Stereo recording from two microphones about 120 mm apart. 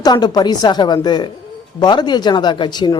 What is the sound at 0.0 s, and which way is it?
Speech, 35° left (ahead or behind).